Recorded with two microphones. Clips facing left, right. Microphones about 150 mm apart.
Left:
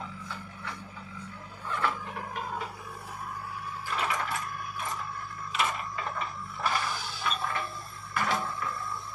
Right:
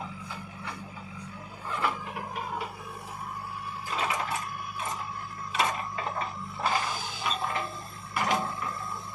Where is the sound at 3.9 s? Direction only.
20° right (ahead or behind).